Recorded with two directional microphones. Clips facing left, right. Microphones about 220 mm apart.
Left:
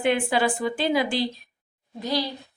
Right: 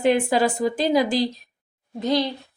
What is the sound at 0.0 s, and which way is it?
Speech, 40° right (ahead or behind).